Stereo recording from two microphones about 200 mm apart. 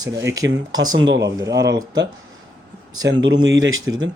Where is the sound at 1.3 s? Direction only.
15° right (ahead or behind).